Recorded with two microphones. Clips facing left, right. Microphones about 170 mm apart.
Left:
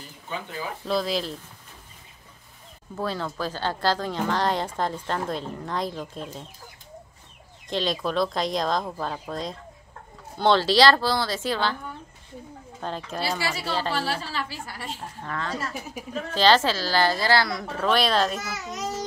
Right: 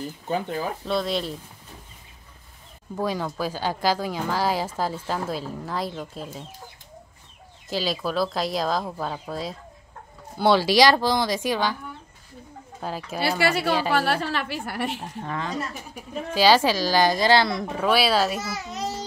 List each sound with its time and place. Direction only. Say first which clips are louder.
0.8 s speech: left 2 dB; centre (ahead or behind)
3.0 s speech: right 2 dB; 15° right (ahead or behind)
7.7 s speech: even; 5° right (ahead or behind)
12.8 s speech: right 1 dB; 5° right (ahead or behind)
13.4 s a woman's voice: right 6 dB; 65° right (ahead or behind)
15.2 s speech: right 1 dB; 20° right (ahead or behind)
18.4 s a child's voice: right 2 dB; 30° right (ahead or behind)